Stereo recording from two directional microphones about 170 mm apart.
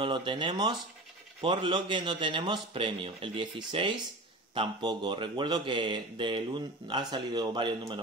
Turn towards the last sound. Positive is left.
turn(degrees=-25)  # may be behind; listen again after turning